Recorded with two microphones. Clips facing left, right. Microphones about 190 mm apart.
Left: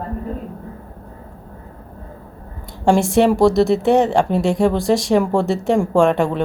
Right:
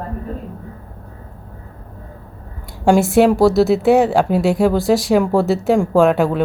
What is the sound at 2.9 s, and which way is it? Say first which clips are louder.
Speech: right 2 dB; 5° right (ahead or behind).